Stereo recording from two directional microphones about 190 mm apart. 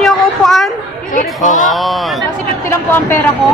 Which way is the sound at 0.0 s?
Centre (ahead or behind).